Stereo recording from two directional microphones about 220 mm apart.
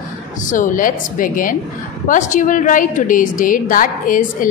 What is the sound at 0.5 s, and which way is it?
A woman's voice, 35° left (ahead or behind).